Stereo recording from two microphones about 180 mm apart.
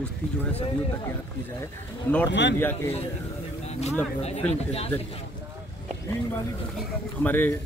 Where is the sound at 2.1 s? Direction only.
10° left (ahead or behind).